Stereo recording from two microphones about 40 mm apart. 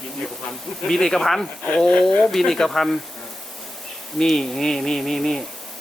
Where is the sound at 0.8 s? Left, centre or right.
Centre.